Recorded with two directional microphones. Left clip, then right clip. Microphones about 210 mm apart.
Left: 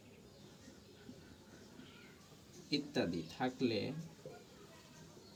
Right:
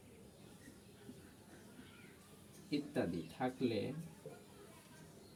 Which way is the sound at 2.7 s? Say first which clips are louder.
Left 2 dB; 5° right (ahead or behind).